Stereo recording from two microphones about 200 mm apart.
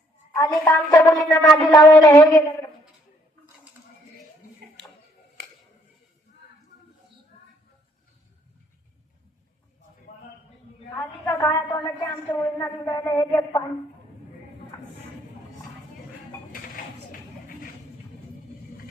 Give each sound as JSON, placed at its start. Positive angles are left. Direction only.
{"t": 0.3, "sound": "a woman's voice", "side_deg": 15}
{"t": 10.9, "sound": "a woman's voice", "side_deg": 10}
{"t": 16.5, "sound": "a sound", "side_deg": 45}